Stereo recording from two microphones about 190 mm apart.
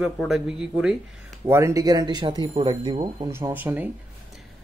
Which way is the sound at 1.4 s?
15° right (ahead or behind).